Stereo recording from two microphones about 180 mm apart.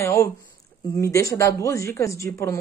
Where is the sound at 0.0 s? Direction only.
15° left (ahead or behind).